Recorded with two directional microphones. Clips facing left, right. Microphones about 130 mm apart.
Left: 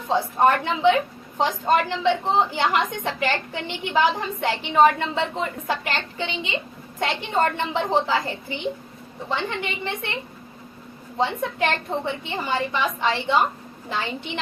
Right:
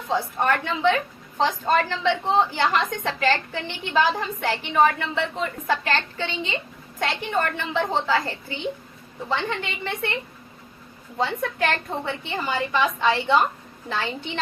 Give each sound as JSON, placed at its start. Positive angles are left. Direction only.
{"t": 0.1, "sound": "a woman's voice", "side_deg": 20}
{"t": 11.2, "sound": "a woman's voice", "side_deg": 20}